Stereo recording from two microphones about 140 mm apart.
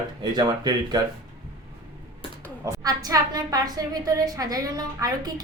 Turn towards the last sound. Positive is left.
turn(degrees=-25)  # may be behind; listen again after turning